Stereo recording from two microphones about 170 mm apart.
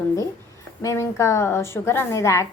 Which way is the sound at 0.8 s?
15° left (ahead or behind).